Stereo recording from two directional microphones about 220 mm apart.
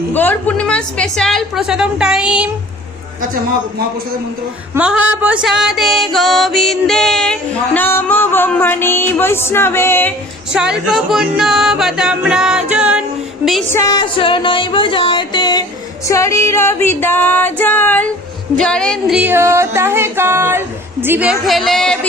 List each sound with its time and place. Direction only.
0.1 s music: 10° left (ahead or behind)
4.7 s music: 5° right (ahead or behind); by 10.1 s 10° left (ahead or behind)
10.5 s music: 5° right (ahead or behind)
13.7 s music: 15° left (ahead or behind)
18.5 s a sound: 5° left (ahead or behind)